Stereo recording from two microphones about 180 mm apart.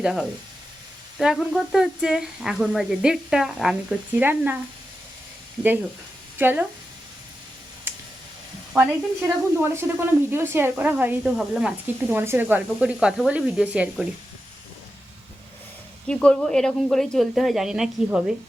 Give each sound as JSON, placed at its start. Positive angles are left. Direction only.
{"t": 0.0, "sound": "speech", "side_deg": -5}
{"t": 6.4, "sound": "speech", "side_deg": -10}
{"t": 8.7, "sound": "speech", "side_deg": -15}
{"t": 16.0, "sound": "speech", "side_deg": 5}